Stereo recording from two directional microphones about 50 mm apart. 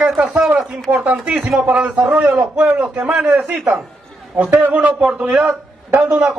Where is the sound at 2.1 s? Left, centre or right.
Right.